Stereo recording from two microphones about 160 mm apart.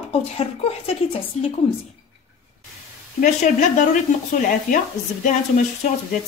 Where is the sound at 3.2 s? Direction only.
50° left (ahead or behind).